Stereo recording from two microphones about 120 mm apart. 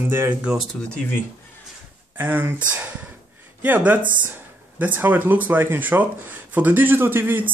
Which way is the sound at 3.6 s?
15° right (ahead or behind).